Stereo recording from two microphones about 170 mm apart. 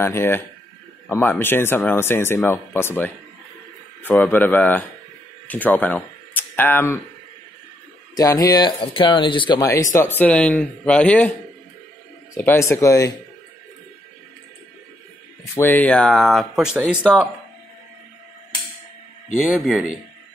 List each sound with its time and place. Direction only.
0.0 s speech: 15° left (ahead or behind)
8.1 s speech: 20° left (ahead or behind)
9.9 s speech: 10° left (ahead or behind)
12.4 s speech: 15° left (ahead or behind)
15.5 s speech: 10° left (ahead or behind); by 17.3 s 5° right (ahead or behind)
19.4 s speech: centre (ahead or behind)